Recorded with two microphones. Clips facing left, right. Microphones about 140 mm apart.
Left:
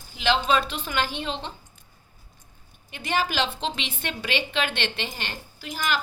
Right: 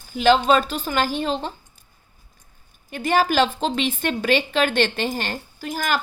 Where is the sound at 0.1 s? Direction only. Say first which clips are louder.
Right 6 dB; 45° right (ahead or behind).